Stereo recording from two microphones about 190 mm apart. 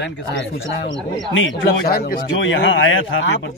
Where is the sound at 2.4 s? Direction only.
85° left.